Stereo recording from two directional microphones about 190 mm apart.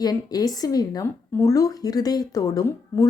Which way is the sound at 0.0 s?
20° left (ahead or behind).